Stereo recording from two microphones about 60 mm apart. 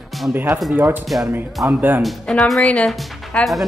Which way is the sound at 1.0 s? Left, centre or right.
Centre.